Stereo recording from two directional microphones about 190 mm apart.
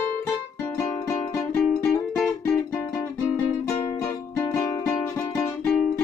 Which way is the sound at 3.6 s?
15° left (ahead or behind).